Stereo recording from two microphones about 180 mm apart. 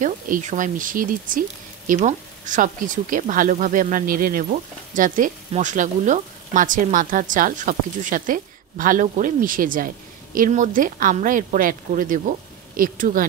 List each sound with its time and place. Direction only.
0.0 s speech: 45° right (ahead or behind)